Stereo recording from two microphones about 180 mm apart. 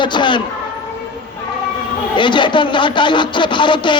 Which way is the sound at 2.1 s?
25° left (ahead or behind).